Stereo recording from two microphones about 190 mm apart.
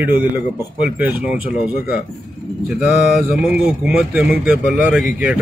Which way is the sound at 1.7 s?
50° left (ahead or behind).